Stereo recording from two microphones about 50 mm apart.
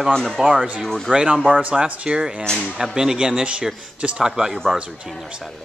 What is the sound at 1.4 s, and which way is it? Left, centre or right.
Speech, right.